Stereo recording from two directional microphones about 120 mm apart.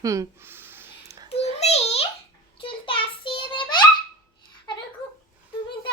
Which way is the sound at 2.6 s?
45° left (ahead or behind).